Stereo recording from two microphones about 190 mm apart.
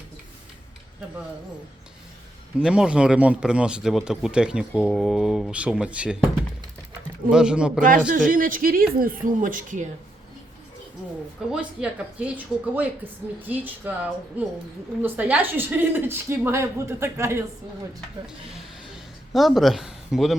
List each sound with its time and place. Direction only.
2.6 s speech: 5° right (ahead or behind)
7.8 s speech: 45° right (ahead or behind)
11.5 s a woman's voice: 5° right (ahead or behind)
15.0 s a woman's voice: 10° right (ahead or behind)
19.3 s speech: centre (ahead or behind)